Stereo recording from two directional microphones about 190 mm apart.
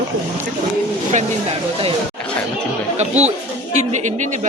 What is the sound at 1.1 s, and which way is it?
Speech, 30° right (ahead or behind).